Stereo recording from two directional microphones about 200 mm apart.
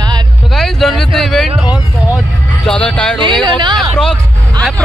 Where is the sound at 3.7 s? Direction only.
5° left (ahead or behind).